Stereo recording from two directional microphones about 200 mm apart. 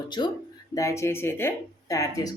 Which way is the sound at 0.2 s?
25° left (ahead or behind).